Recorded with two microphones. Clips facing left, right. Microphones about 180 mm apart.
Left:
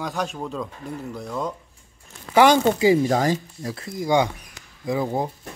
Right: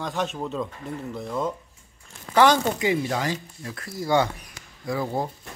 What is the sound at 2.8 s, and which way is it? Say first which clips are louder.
Speech: left 7 dB; 40° left (ahead or behind).